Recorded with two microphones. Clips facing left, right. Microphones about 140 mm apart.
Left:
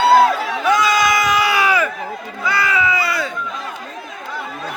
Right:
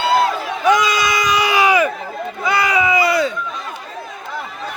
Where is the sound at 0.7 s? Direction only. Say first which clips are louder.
Even; 20° right (ahead or behind).